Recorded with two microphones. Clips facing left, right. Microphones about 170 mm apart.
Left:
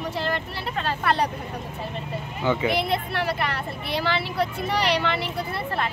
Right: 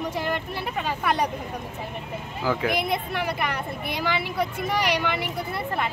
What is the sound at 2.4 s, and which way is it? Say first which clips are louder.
Speech: left 2 dB; centre (ahead or behind).